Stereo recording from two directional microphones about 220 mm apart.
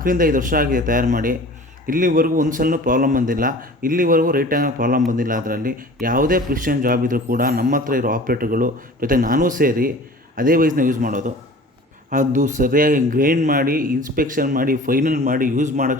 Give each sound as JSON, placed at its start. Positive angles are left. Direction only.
{"t": 0.0, "sound": "speech", "side_deg": -40}